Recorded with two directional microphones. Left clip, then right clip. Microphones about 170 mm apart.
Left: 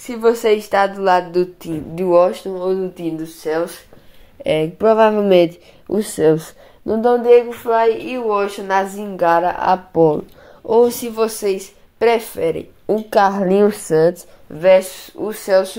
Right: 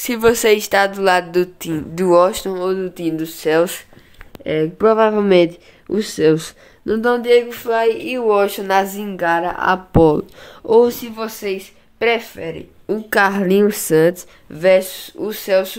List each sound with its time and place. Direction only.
0.0 s a woman's voice: 25° right (ahead or behind)
3.0 s speech: 35° right (ahead or behind)
4.7 s a woman's voice: 15° right (ahead or behind)
5.0 s a woman's voice: 5° right (ahead or behind)
5.9 s a woman's voice: 15° right (ahead or behind)
9.1 s a woman's voice: 5° left (ahead or behind)
9.9 s speech: 65° right (ahead or behind)
10.7 s a woman's voice: 10° left (ahead or behind)
12.4 s speech: 25° left (ahead or behind)
13.3 s speech: 35° right (ahead or behind)
13.8 s speech: 45° right (ahead or behind)
14.6 s speech: 30° right (ahead or behind)
15.4 s a woman's voice: 5° right (ahead or behind)